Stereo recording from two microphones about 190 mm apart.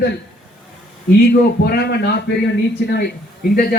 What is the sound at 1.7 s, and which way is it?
Music, 60° left (ahead or behind).